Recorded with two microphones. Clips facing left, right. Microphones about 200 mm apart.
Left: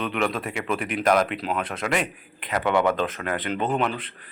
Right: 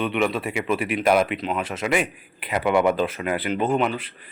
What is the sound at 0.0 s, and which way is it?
Speech, 5° right (ahead or behind).